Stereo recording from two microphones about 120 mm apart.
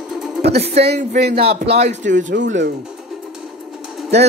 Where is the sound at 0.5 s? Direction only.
55° right (ahead or behind).